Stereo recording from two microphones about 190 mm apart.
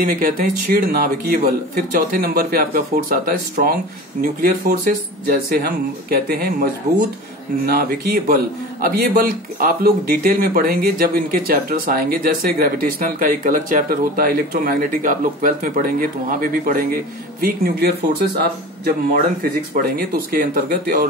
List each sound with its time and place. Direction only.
0.0 s speech: 50° right (ahead or behind)
19.4 s speech: 50° right (ahead or behind)